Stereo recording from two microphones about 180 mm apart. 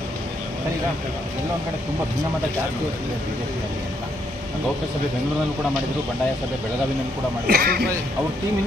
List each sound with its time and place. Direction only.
7.4 s a man's voice: 60° right (ahead or behind)